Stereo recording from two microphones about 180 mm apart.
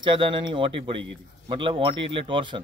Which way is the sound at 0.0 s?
25° right (ahead or behind).